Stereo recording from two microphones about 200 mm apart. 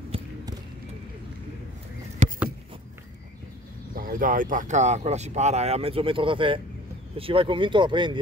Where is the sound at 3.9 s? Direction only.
45° right (ahead or behind).